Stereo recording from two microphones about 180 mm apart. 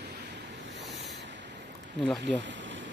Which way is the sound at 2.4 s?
90° right.